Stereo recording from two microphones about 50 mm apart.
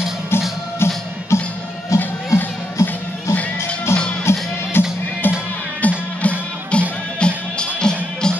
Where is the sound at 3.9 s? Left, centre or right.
Left.